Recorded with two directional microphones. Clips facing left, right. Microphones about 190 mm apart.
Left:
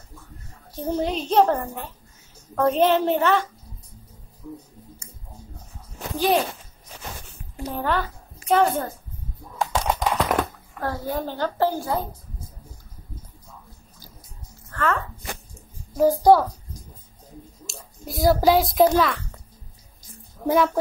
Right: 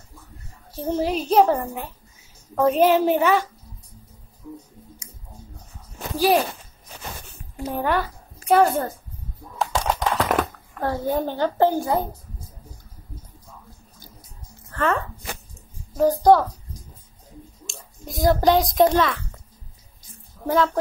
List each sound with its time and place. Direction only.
0.7 s a child's voice: 5° right (ahead or behind)
6.1 s a woman's voice: 10° right (ahead or behind)
7.7 s a woman's voice: 10° right (ahead or behind)
9.6 s typing: centre (ahead or behind)
10.8 s a woman's voice: 20° right (ahead or behind)
14.7 s music: 20° right (ahead or behind)
17.6 s a child's voice: 5° left (ahead or behind)
20.4 s a woman's voice: 15° left (ahead or behind)